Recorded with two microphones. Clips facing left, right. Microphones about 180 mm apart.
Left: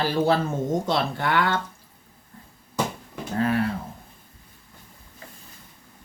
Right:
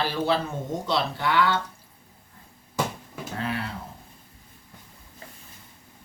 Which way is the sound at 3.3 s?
45° left (ahead or behind).